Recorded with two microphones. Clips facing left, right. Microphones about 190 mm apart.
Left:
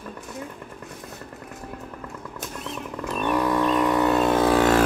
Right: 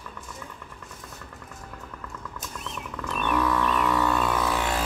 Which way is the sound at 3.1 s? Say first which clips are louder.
Left 3 dB; 35° left (ahead or behind).